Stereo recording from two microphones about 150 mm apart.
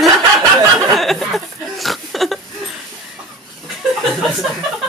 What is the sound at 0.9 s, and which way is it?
Speech, centre (ahead or behind).